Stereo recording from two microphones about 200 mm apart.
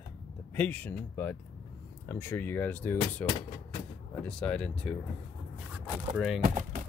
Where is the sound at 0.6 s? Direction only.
5° left (ahead or behind).